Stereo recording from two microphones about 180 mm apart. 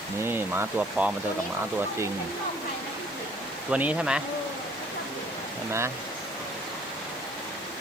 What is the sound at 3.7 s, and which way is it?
Speech, 5° right (ahead or behind).